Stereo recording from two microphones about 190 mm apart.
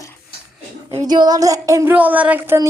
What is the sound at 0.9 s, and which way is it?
Speech, 20° right (ahead or behind).